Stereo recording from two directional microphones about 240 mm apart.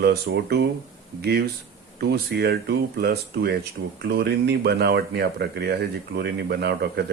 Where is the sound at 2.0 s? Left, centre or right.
Right.